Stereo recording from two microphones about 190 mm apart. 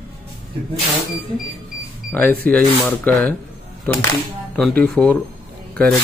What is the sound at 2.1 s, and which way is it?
Speech, 10° left (ahead or behind).